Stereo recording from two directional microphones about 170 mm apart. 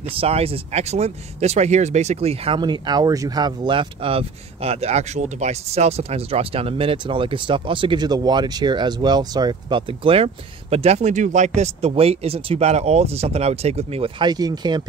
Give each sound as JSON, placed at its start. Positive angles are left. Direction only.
{"t": 0.1, "sound": "speech", "side_deg": -35}